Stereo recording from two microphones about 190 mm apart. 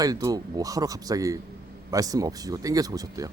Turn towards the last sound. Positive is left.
turn(degrees=-20)  # may be behind; listen again after turning